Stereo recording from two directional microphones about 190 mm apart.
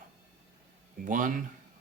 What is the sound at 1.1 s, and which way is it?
Speech, 45° right (ahead or behind).